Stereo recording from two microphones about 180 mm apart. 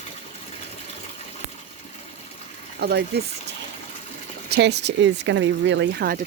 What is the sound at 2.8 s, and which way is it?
Speech, 65° right (ahead or behind).